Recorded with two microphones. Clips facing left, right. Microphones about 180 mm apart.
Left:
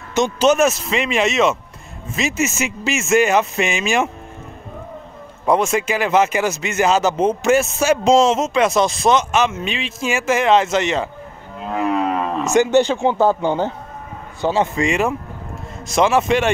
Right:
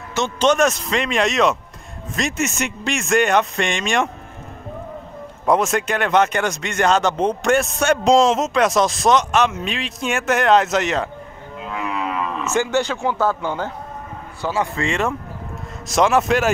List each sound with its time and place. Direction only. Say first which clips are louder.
0.1 s speech: left 3 dB; 10° left (ahead or behind)
5.4 s speech: left 1 dB; centre (ahead or behind)
11.6 s cattle: left 6 dB; 40° left (ahead or behind)
12.5 s a man's voice: left 6 dB; 20° left (ahead or behind)
14.9 s speech: left 3 dB; 10° left (ahead or behind)